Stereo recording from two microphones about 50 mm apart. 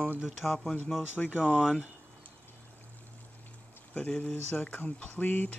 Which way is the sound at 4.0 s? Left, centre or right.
Left.